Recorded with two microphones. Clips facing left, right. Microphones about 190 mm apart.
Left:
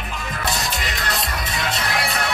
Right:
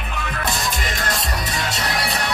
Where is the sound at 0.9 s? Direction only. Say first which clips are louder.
Right 1 dB; 45° right (ahead or behind).